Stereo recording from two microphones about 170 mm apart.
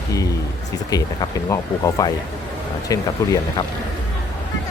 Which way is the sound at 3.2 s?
20° left (ahead or behind).